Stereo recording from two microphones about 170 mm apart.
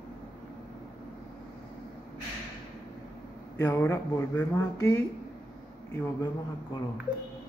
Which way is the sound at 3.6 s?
15° left (ahead or behind).